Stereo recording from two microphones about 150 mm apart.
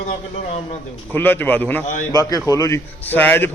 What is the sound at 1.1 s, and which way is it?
A man's voice, 15° left (ahead or behind).